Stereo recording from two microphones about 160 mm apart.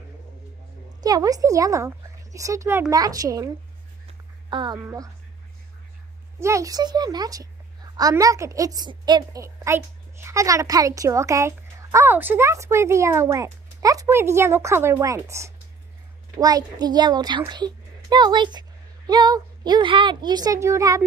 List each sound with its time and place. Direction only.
1.0 s a woman's voice: 25° right (ahead or behind)
4.5 s a woman's voice: 30° right (ahead or behind)
4.7 s a woman's voice: 20° right (ahead or behind)
6.4 s a woman's voice: 20° right (ahead or behind)